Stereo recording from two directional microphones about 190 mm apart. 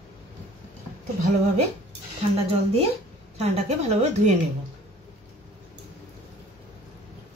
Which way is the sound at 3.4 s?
35° right (ahead or behind).